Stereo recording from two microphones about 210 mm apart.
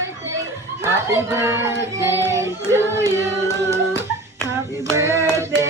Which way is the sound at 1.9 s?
15° right (ahead or behind).